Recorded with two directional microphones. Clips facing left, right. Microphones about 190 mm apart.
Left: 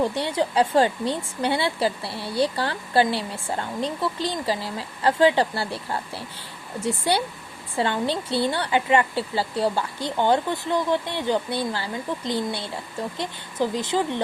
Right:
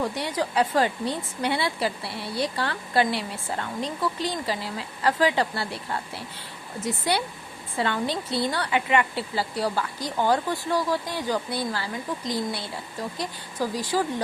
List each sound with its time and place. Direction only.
0.0 s speech: 30° left (ahead or behind)